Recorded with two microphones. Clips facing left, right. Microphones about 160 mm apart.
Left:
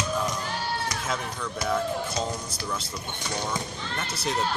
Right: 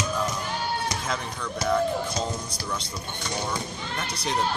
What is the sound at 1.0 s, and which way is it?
Speech, 5° left (ahead or behind).